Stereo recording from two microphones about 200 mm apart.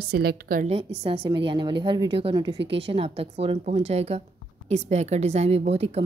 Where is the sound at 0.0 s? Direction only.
50° right (ahead or behind).